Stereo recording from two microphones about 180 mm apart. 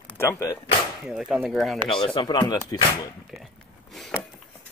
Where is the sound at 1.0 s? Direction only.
5° right (ahead or behind).